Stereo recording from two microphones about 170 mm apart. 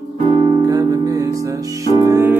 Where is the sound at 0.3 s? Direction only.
35° right (ahead or behind).